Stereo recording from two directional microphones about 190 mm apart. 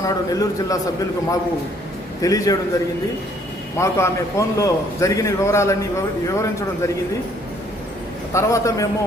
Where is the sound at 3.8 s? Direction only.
15° left (ahead or behind).